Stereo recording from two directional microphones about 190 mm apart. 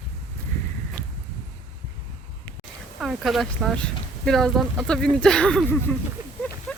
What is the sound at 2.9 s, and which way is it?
Speech, centre (ahead or behind).